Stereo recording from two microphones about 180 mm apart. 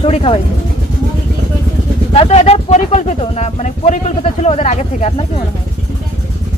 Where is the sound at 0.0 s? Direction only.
30° left (ahead or behind).